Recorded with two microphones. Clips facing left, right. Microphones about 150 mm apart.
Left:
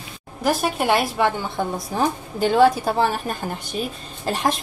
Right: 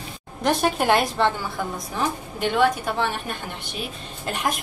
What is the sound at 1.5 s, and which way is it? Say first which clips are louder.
A woman's voice: left 4 dB; 35° left (ahead or behind).